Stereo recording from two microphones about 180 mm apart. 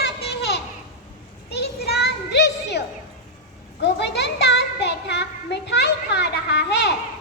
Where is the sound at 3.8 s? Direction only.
70° left (ahead or behind).